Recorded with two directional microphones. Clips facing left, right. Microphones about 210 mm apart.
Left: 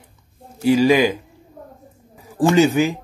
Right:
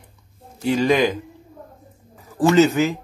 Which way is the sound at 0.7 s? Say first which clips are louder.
Left 3 dB; 10° left (ahead or behind).